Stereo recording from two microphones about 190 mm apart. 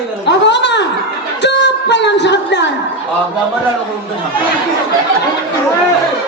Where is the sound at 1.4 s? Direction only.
65° left (ahead or behind).